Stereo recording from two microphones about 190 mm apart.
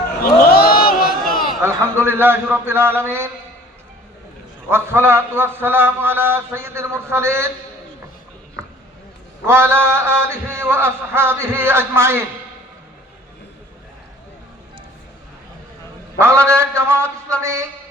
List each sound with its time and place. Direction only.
0.4 s a sound: 50° left (ahead or behind)
1.6 s a man's voice: 10° right (ahead or behind)
4.7 s a man's voice: 10° right (ahead or behind)
9.5 s a man's voice: 10° right (ahead or behind)
16.1 s a man's voice: 15° right (ahead or behind)